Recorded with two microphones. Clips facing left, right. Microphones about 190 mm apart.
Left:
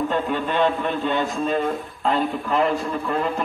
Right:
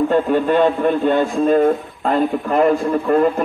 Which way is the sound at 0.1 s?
45° right (ahead or behind).